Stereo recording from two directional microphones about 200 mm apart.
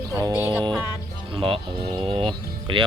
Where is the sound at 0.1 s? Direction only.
15° right (ahead or behind).